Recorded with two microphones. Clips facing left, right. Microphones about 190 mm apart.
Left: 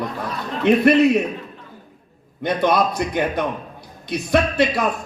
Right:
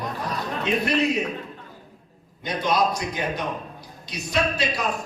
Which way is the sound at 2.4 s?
60° left (ahead or behind).